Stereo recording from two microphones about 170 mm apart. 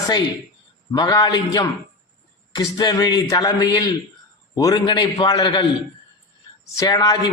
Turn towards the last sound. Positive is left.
turn(degrees=20)  # may be behind; listen again after turning